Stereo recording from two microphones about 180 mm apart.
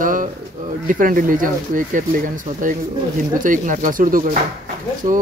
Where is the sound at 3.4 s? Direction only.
45° right (ahead or behind).